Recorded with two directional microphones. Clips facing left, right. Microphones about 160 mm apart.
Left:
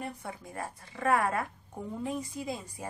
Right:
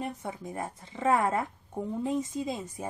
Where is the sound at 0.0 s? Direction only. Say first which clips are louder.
Right 4 dB; 20° right (ahead or behind).